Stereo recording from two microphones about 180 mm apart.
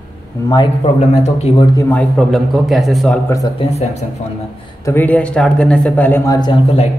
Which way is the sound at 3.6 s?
35° left (ahead or behind).